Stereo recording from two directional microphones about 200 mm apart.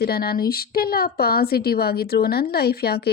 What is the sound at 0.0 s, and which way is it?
Speech, 50° left (ahead or behind).